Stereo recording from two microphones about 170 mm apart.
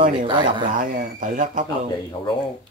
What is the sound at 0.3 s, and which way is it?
Speech, 30° right (ahead or behind).